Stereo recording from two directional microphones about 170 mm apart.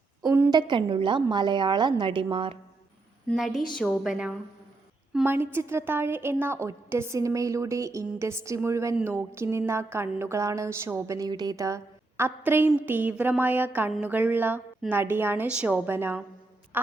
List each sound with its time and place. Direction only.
0.3 s a sound: 10° right (ahead or behind)
0.5 s a woman's voice: 30° right (ahead or behind)
3.2 s a woman's voice: centre (ahead or behind)
16.7 s music: 10° right (ahead or behind)